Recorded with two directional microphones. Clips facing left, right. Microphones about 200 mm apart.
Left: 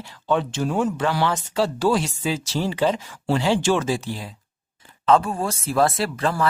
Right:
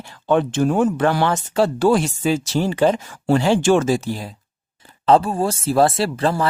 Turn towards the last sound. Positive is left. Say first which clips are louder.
# right 4 dB
turn(degrees=-30)  # may be behind; listen again after turning